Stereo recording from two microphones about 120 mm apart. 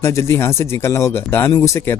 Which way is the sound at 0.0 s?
20° left (ahead or behind).